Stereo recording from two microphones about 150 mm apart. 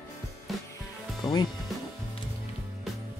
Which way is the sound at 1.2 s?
25° left (ahead or behind).